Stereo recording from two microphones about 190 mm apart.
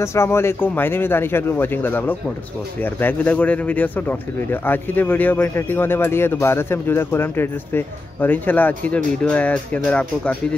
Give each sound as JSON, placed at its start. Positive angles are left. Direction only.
{"t": 0.0, "sound": "speech", "side_deg": 15}